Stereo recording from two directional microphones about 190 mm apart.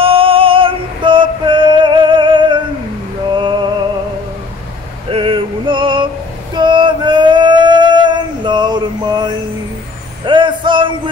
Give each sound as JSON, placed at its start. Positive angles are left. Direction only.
{"t": 0.0, "sound": "synthetic singing", "side_deg": -30}
{"t": 3.3, "sound": "music", "side_deg": -25}
{"t": 5.1, "sound": "music", "side_deg": -30}
{"t": 6.5, "sound": "female singing", "side_deg": -25}
{"t": 10.2, "sound": "vehicle", "side_deg": -25}